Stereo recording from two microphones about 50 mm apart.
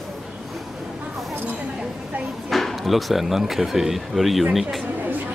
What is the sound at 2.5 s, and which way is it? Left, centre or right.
Speech, centre.